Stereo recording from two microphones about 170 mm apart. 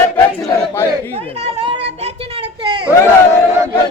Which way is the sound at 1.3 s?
35° right (ahead or behind).